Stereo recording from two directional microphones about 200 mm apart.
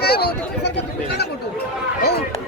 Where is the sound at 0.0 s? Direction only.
55° left (ahead or behind).